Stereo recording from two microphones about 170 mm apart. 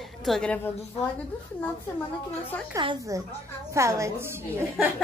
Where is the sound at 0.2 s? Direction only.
5° left (ahead or behind).